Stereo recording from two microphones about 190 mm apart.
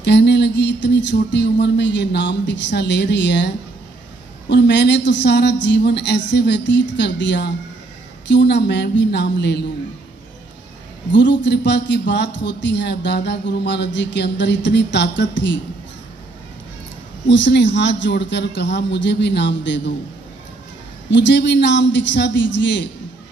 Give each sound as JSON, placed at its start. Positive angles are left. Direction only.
{"t": 0.0, "sound": "a man's voice", "side_deg": 65}
{"t": 11.1, "sound": "a man's voice", "side_deg": 70}
{"t": 17.3, "sound": "a man's voice", "side_deg": 70}
{"t": 21.1, "sound": "a man's voice", "side_deg": 70}